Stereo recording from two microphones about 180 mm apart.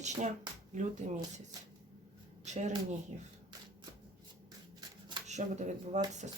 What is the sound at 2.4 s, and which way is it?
Speech, 40° right (ahead or behind).